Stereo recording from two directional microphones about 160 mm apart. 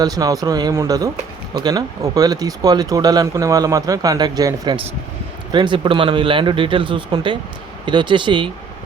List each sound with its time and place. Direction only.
0.0 s speech: 25° right (ahead or behind)